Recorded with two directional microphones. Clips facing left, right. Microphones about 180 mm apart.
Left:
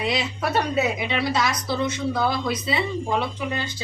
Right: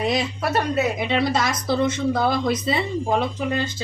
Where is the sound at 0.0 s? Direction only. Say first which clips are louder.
Right 2 dB; 45° right (ahead or behind).